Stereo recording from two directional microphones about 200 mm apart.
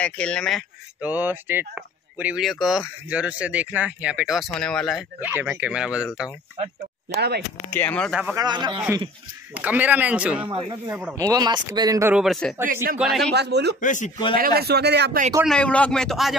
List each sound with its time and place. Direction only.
0.0 s speech: 5° left (ahead or behind)
5.3 s speech: 10° right (ahead or behind)
7.2 s a man's voice: 55° right (ahead or behind)
7.7 s speech: 10° left (ahead or behind)
8.4 s a man's voice: 20° right (ahead or behind)
9.5 s speech: 10° right (ahead or behind)
12.2 s speech: centre (ahead or behind)
13.3 s a man's voice: 55° right (ahead or behind)
13.7 s speech: 40° left (ahead or behind)
14.3 s a man's voice: 50° right (ahead or behind)
15.4 s speech: 5° left (ahead or behind)